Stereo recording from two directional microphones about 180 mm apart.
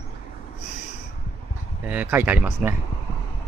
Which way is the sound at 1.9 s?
10° right (ahead or behind).